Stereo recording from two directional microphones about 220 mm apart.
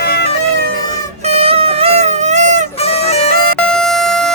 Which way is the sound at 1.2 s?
30° right (ahead or behind).